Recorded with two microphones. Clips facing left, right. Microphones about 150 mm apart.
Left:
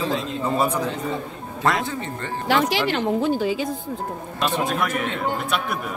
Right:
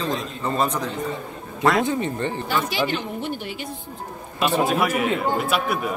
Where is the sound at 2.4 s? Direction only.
90° left.